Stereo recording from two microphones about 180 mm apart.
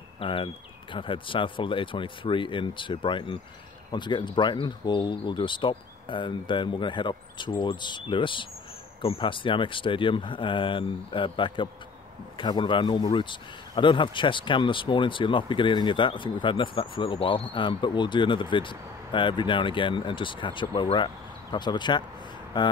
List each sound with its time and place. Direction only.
0.2 s speech: 30° left (ahead or behind)